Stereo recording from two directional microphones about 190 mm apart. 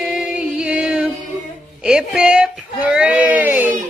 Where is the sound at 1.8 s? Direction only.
5° right (ahead or behind).